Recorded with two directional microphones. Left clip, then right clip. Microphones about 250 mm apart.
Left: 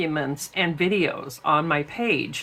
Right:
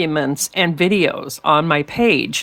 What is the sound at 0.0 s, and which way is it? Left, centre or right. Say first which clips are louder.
Speech: right 7 dB; right.